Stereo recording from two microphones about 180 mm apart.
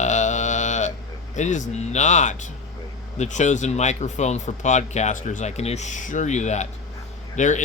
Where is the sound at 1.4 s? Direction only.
45° left (ahead or behind).